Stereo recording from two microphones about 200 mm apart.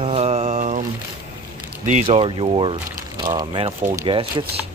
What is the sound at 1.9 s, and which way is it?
Speech, 30° right (ahead or behind).